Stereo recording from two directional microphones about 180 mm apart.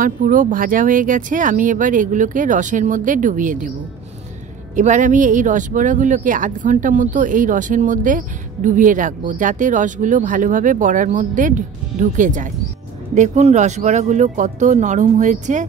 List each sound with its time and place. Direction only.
0.0 s speech: 50° right (ahead or behind)
4.7 s speech: 45° right (ahead or behind)